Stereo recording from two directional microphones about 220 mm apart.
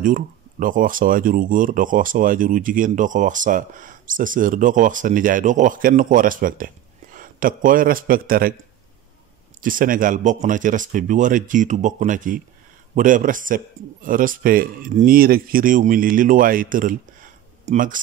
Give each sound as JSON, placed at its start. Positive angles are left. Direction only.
{"t": 0.0, "sound": "speech", "side_deg": -40}
{"t": 9.6, "sound": "speech", "side_deg": -40}